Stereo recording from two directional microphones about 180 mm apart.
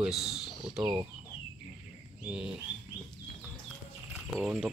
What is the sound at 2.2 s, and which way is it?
Speech, 5° right (ahead or behind).